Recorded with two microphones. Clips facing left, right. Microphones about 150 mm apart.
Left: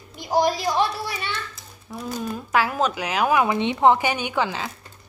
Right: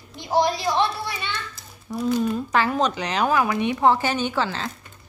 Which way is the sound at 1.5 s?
Centre (ahead or behind).